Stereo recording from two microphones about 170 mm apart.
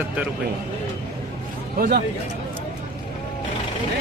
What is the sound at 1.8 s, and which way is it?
Speech, 65° right (ahead or behind).